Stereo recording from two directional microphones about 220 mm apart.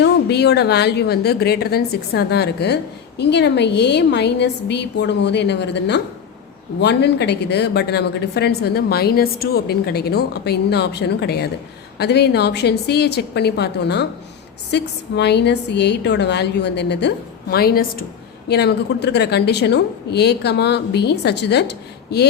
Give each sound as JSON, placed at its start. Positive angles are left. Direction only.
{"t": 0.0, "sound": "a woman's voice", "side_deg": 50}